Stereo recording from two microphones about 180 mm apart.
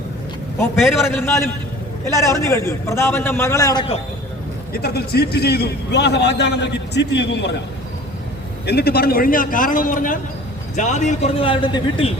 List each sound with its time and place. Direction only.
0.8 s a man's voice: centre (ahead or behind)
1.1 s a man's voice: 15° left (ahead or behind)
4.7 s a man's voice: 60° left (ahead or behind); by 7.5 s 80° left
8.6 s a man's voice: 60° left (ahead or behind); by 12.1 s 30° left (ahead or behind)